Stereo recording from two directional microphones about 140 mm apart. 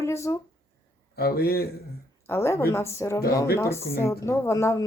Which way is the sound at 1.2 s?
90° left.